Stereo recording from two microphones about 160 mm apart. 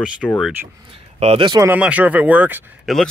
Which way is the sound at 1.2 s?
35° right (ahead or behind).